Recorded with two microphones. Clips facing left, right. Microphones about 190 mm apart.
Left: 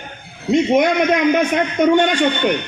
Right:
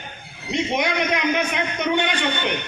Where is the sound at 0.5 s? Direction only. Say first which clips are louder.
Left 9 dB; 45° left (ahead or behind).